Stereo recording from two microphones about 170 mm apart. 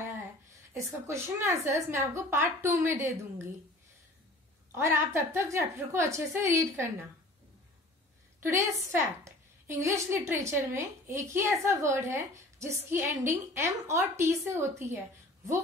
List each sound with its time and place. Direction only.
0.7 s a woman's voice: 15° right (ahead or behind)
4.7 s a woman's voice: 15° right (ahead or behind)
8.4 s a woman's voice: 15° right (ahead or behind)